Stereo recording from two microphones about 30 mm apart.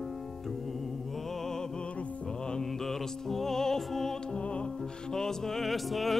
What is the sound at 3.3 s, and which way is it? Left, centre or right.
Music, centre.